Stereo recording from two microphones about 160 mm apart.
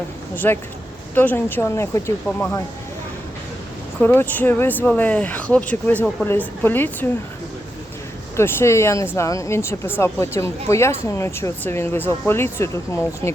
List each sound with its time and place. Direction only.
0.3 s speech: 15° left (ahead or behind)
4.0 s speech: 10° left (ahead or behind)
8.4 s speech: 15° left (ahead or behind)